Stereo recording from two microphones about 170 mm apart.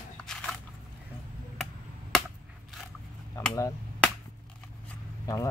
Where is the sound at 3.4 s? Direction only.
20° left (ahead or behind).